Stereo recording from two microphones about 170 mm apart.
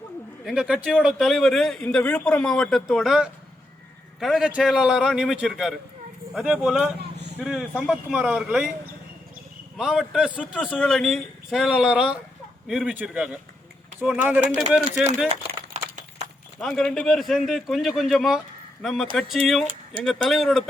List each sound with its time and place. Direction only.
0.4 s a man's voice: 5° right (ahead or behind)
9.7 s a man's voice: centre (ahead or behind)
15.7 s a sound: 45° right (ahead or behind)
16.6 s a man's voice: centre (ahead or behind)